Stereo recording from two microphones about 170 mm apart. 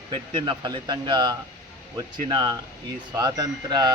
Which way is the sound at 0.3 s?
25° right (ahead or behind).